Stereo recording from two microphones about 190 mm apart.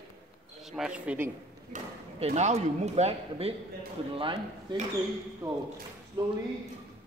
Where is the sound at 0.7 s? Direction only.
5° right (ahead or behind).